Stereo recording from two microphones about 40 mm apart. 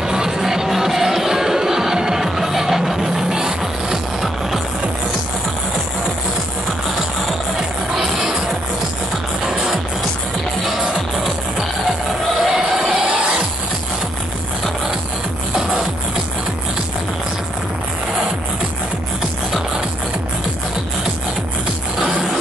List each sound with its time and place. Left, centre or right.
0.0 s music: centre
7.9 s music: centre
12.4 s music: centre